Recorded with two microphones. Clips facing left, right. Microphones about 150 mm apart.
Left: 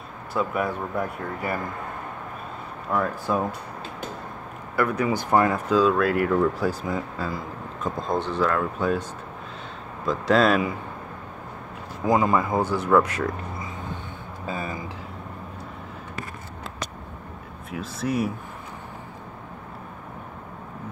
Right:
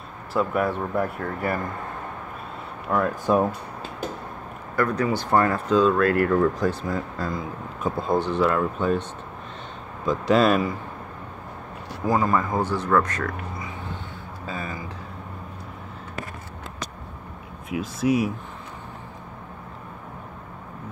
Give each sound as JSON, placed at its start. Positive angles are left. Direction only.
{"t": 0.3, "sound": "speech", "side_deg": 0}
{"t": 2.9, "sound": "speech", "side_deg": 0}
{"t": 3.3, "sound": "speech", "side_deg": -20}
{"t": 4.7, "sound": "speech", "side_deg": 10}
{"t": 5.7, "sound": "speech", "side_deg": 5}
{"t": 7.8, "sound": "speech", "side_deg": -5}
{"t": 10.0, "sound": "speech", "side_deg": 0}
{"t": 12.0, "sound": "speech", "side_deg": 15}
{"t": 17.6, "sound": "speech", "side_deg": -10}